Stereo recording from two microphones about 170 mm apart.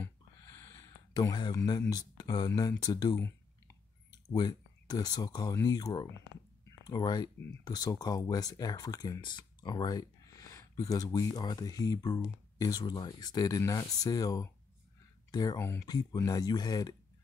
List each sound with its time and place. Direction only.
0.6 s speech: 20° left (ahead or behind)